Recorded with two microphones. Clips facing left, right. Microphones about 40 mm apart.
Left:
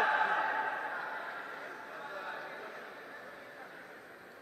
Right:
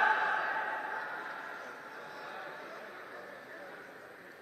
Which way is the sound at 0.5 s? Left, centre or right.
Centre.